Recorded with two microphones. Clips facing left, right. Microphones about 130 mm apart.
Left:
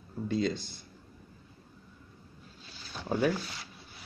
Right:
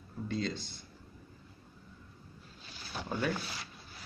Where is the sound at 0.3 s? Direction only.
10° left (ahead or behind).